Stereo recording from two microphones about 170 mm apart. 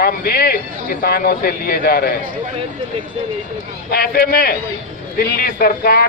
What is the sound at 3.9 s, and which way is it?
Speech, 60° left (ahead or behind).